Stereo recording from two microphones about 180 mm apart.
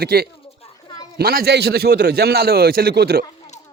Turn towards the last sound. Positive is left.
turn(degrees=-60)  # may be behind; listen again after turning